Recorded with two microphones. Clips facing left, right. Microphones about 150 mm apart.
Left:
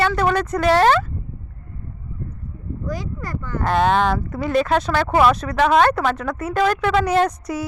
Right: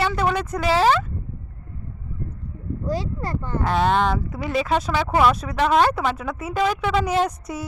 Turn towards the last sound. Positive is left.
turn(degrees=-5)  # may be behind; listen again after turning